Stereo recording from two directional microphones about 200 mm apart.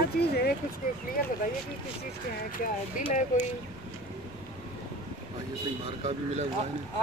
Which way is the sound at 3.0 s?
35° left (ahead or behind).